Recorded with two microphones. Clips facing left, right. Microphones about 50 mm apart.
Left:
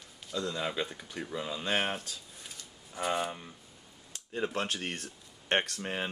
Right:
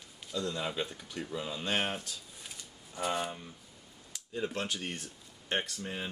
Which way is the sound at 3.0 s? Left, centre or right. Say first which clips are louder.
Left 2 dB; centre.